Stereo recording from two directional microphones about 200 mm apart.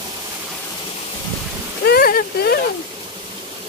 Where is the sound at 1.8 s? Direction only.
50° left (ahead or behind).